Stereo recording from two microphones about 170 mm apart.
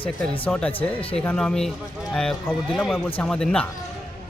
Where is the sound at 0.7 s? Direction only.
35° left (ahead or behind).